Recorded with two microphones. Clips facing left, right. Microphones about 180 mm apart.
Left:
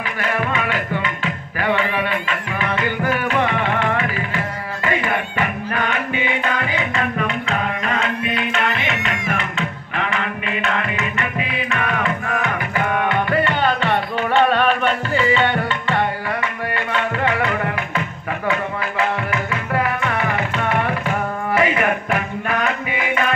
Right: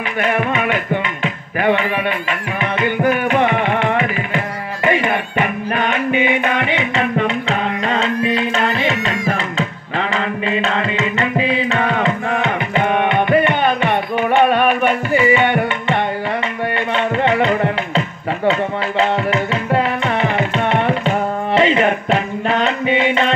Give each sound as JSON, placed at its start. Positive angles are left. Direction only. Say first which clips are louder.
{"t": 0.2, "sound": "speech", "louder": "right 5 dB", "side_deg": -20}
{"t": 1.2, "sound": "music", "louder": "right 5 dB", "side_deg": -20}